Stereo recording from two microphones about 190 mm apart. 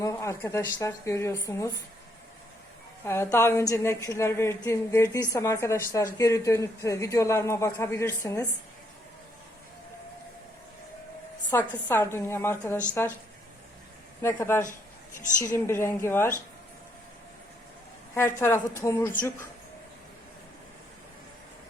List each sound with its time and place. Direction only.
0.0 s a man's voice: 15° left (ahead or behind)
3.0 s a man's voice: 15° left (ahead or behind)
11.5 s a man's voice: 15° left (ahead or behind)
14.2 s a man's voice: 15° left (ahead or behind)
18.1 s a man's voice: 15° left (ahead or behind)